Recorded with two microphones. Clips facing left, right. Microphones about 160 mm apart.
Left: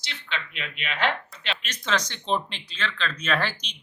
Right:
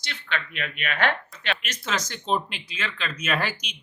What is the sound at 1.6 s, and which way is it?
Speech, 10° right (ahead or behind).